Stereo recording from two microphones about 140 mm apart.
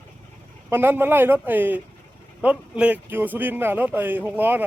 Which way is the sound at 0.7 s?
15° right (ahead or behind).